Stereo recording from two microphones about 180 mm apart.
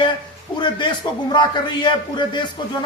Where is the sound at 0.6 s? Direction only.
25° left (ahead or behind).